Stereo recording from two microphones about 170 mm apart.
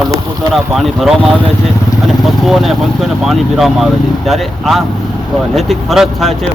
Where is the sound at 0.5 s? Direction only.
Centre (ahead or behind).